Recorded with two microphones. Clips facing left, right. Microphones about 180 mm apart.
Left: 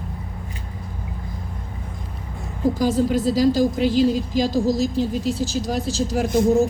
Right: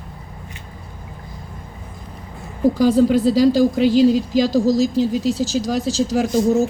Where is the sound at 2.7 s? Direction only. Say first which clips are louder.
Right 6 dB; 45° left (ahead or behind).